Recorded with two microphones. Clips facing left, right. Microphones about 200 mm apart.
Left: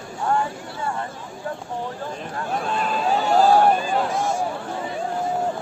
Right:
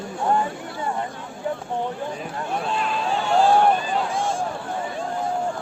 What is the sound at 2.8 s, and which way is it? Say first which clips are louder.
Speech: left 3 dB; 40° left (ahead or behind).